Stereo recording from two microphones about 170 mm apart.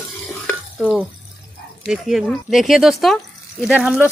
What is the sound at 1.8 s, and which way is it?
Speech, centre (ahead or behind).